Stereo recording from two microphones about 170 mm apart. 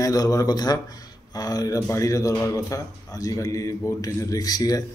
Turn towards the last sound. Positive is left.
turn(degrees=20)  # may be behind; listen again after turning